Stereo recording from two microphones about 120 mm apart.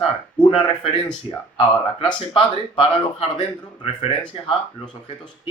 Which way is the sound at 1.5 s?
50° left (ahead or behind).